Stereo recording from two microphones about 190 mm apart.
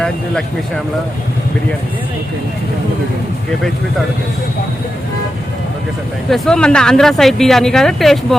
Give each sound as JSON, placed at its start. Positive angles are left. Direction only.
{"t": 6.3, "sound": "speech", "side_deg": 0}